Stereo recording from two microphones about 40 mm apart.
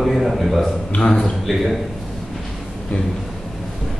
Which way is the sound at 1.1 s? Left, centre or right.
Centre.